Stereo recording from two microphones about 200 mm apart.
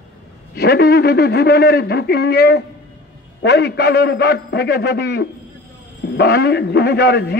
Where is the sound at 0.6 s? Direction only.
55° left (ahead or behind).